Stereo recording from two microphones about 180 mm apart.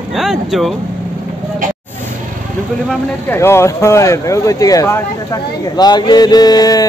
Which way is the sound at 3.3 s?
15° left (ahead or behind).